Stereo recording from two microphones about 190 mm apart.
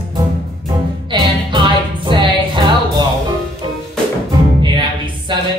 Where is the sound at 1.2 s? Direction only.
25° right (ahead or behind).